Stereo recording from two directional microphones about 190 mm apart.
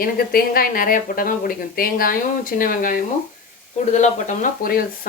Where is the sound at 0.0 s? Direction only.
50° left (ahead or behind).